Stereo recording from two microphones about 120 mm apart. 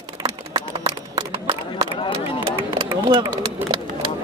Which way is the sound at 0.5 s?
35° right (ahead or behind).